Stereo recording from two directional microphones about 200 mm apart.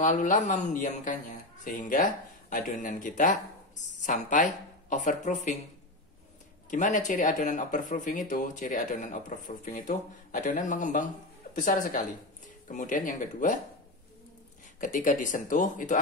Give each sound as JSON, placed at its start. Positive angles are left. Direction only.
{"t": 0.0, "sound": "speech", "side_deg": 40}
{"t": 6.7, "sound": "speech", "side_deg": 40}
{"t": 14.8, "sound": "speech", "side_deg": 40}